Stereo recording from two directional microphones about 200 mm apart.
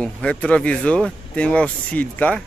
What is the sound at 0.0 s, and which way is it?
Speech, 5° left (ahead or behind).